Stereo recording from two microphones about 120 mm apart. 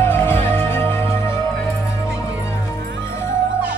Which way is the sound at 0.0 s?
20° left (ahead or behind).